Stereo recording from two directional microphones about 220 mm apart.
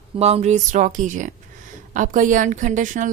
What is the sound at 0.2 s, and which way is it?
A woman's voice, 30° right (ahead or behind).